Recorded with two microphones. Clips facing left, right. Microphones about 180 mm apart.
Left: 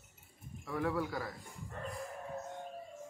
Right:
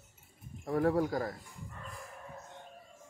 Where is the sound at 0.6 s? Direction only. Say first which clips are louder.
Right 6 dB; 45° right (ahead or behind).